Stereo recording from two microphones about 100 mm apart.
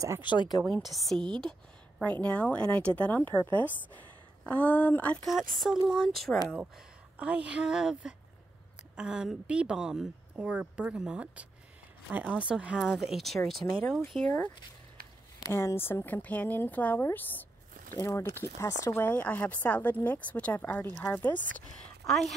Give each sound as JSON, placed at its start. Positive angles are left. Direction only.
{"t": 0.2, "sound": "speech", "side_deg": 50}
{"t": 0.7, "sound": "a woman's voice", "side_deg": 0}
{"t": 2.0, "sound": "speech", "side_deg": 15}
{"t": 5.3, "sound": "a woman's voice", "side_deg": -5}
{"t": 7.2, "sound": "a woman's voice", "side_deg": -10}
{"t": 13.6, "sound": "speech", "side_deg": 25}
{"t": 15.4, "sound": "speech", "side_deg": 25}
{"t": 22.0, "sound": "a woman's voice", "side_deg": 5}